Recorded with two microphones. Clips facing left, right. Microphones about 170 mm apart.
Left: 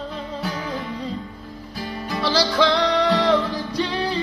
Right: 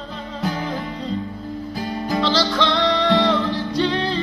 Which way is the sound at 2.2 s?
10° left (ahead or behind).